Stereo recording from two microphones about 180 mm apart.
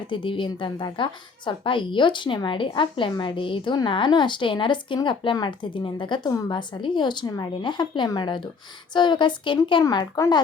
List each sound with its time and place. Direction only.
0.1 s a woman's voice: 25° left (ahead or behind)